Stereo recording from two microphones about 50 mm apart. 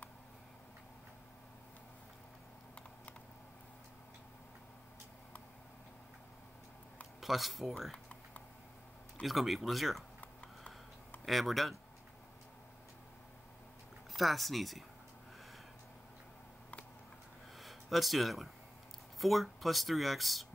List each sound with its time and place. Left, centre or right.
7.2 s speech: centre
9.2 s speech: centre
10.4 s a sound: left
11.2 s speech: centre
14.1 s speech: centre
17.6 s a sound: centre
19.1 s speech: centre